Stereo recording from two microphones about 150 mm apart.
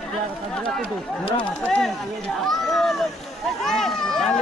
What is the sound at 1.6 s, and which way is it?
Speech, 5° left (ahead or behind).